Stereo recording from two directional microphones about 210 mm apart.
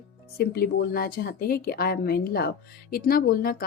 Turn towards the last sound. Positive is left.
turn(degrees=45)  # may be behind; listen again after turning